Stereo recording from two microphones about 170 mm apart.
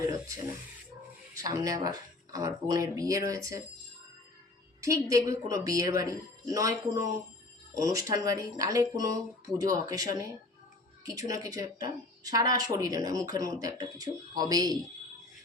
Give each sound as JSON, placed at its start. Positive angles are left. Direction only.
{"t": 1.3, "sound": "a woman's voice", "side_deg": -20}
{"t": 4.8, "sound": "a woman's voice", "side_deg": -20}